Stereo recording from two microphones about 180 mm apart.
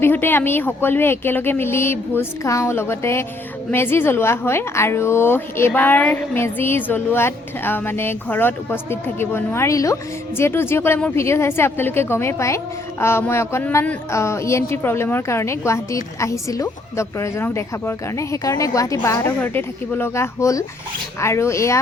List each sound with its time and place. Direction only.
0.0 s a woman's voice: 10° left (ahead or behind)